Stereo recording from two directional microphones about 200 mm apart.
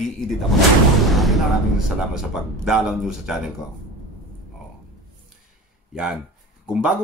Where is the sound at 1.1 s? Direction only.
Centre (ahead or behind).